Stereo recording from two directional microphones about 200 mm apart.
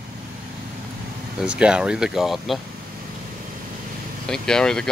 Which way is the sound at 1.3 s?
5° right (ahead or behind).